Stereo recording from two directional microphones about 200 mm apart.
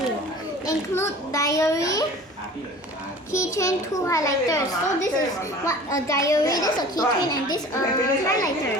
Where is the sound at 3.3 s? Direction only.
15° left (ahead or behind).